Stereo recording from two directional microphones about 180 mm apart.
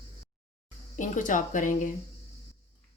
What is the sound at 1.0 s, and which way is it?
Speech, 45° left (ahead or behind).